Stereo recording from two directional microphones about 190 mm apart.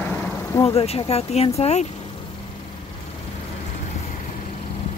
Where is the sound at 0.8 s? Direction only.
30° left (ahead or behind).